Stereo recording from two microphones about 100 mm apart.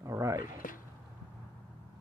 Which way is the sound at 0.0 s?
30° right (ahead or behind).